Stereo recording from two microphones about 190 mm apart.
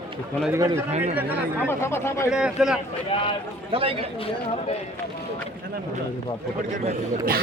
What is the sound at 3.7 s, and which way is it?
Speech, 30° right (ahead or behind).